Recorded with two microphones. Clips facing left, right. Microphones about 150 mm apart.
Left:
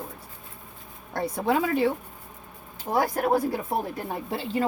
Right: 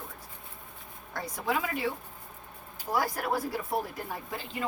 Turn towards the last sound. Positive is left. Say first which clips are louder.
# left 9 dB
turn(degrees=30)  # may be behind; listen again after turning